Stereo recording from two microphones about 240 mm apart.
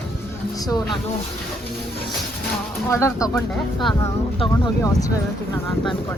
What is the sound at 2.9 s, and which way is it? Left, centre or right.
Speech, centre.